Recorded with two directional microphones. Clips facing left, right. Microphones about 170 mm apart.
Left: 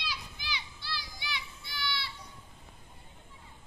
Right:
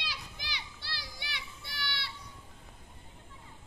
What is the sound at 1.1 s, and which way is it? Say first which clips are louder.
Children playing: left 4 dB; 65° right (ahead or behind).